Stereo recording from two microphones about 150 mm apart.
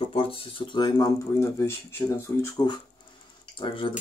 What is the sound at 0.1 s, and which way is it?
Speech, 40° left (ahead or behind).